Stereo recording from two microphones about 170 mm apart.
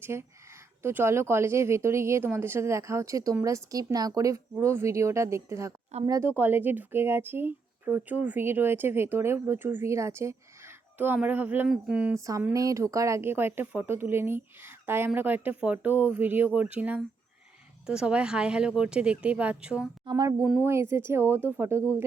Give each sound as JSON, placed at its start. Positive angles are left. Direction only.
{"t": 0.0, "sound": "speech", "side_deg": -15}
{"t": 12.1, "sound": "speech", "side_deg": -20}
{"t": 20.1, "sound": "speech", "side_deg": -20}